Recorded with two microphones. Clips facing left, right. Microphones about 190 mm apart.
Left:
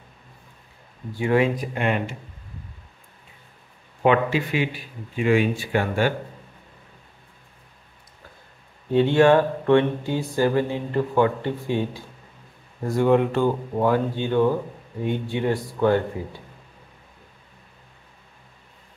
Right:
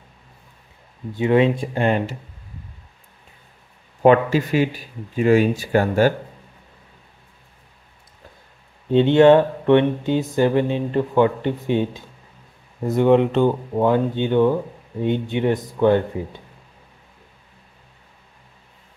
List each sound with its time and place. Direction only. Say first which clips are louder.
1.1 s speech: right 4 dB; 20° right (ahead or behind)
4.0 s speech: right 5 dB; 40° right (ahead or behind)
8.9 s speech: right 4 dB; 20° right (ahead or behind)